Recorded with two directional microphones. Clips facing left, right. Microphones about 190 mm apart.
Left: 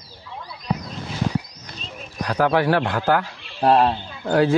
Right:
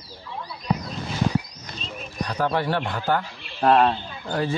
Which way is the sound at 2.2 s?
85° left.